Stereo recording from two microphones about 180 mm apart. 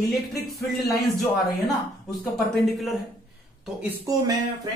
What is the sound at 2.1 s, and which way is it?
Speech, centre (ahead or behind).